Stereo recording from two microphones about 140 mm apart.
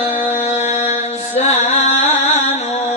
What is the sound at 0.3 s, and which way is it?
Music, 55° left (ahead or behind).